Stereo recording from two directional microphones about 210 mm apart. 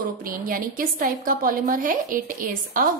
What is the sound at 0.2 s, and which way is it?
A woman's voice, 40° right (ahead or behind).